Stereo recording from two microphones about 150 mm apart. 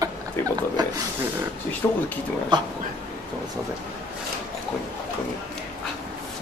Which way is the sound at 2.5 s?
30° right (ahead or behind).